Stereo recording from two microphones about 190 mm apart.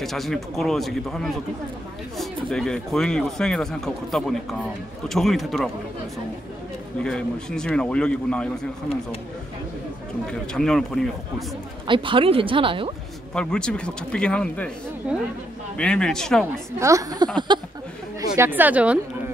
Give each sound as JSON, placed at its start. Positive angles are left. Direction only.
{"t": 0.0, "sound": "speech", "side_deg": 0}
{"t": 2.5, "sound": "speech", "side_deg": 5}
{"t": 7.0, "sound": "speech", "side_deg": 5}
{"t": 10.2, "sound": "speech", "side_deg": 5}
{"t": 11.9, "sound": "speech", "side_deg": -25}
{"t": 13.3, "sound": "speech", "side_deg": 5}
{"t": 15.0, "sound": "a woman's voice", "side_deg": -5}
{"t": 15.8, "sound": "speech", "side_deg": 5}
{"t": 16.8, "sound": "speech", "side_deg": -20}
{"t": 17.5, "sound": "a sound", "side_deg": -25}
{"t": 18.2, "sound": "a woman's voice", "side_deg": -15}